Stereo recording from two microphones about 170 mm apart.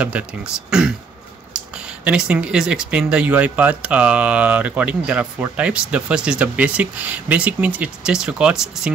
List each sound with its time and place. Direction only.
0.0 s speech: 5° right (ahead or behind)
2.0 s speech: 5° right (ahead or behind)